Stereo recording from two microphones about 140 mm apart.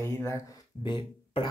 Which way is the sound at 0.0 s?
20° left (ahead or behind).